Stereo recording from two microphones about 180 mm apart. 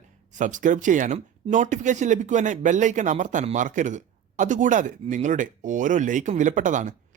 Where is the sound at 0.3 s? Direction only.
45° right (ahead or behind).